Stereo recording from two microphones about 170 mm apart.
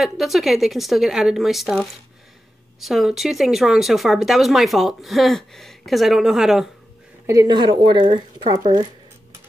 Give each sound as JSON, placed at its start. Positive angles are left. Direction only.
{"t": 0.0, "sound": "speech", "side_deg": 0}
{"t": 7.2, "sound": "a woman's voice", "side_deg": -20}